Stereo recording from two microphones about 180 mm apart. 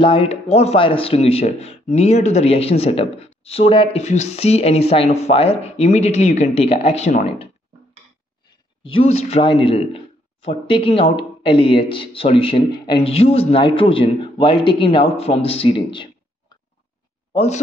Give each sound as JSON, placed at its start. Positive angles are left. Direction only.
{"t": 0.0, "sound": "speech", "side_deg": 30}
{"t": 8.8, "sound": "speech", "side_deg": 30}
{"t": 17.3, "sound": "speech", "side_deg": 35}